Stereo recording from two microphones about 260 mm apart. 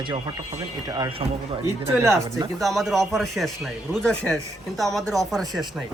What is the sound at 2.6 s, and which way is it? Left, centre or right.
A man's voice, centre.